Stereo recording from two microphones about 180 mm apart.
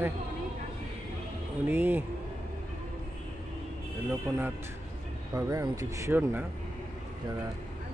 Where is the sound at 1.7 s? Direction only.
10° right (ahead or behind).